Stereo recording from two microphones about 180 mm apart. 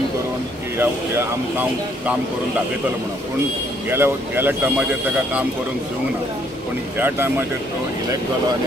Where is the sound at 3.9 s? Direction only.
10° right (ahead or behind).